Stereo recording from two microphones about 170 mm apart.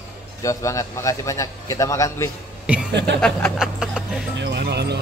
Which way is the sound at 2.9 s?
90° right.